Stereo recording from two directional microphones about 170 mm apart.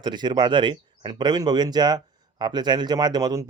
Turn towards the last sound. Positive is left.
turn(degrees=-20)  # may be behind; listen again after turning